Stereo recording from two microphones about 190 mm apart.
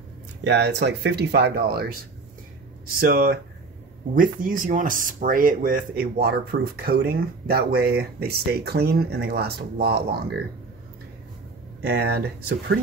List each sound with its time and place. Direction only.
0.4 s speech: 60° right (ahead or behind)
3.0 s speech: 50° right (ahead or behind)
11.8 s speech: 55° right (ahead or behind)